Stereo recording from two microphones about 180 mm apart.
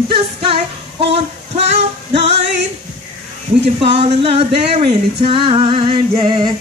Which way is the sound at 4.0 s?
35° right (ahead or behind).